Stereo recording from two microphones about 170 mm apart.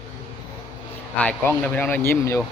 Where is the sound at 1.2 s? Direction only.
10° left (ahead or behind).